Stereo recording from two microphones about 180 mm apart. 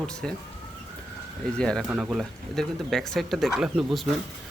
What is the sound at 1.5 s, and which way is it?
Speech, 5° left (ahead or behind).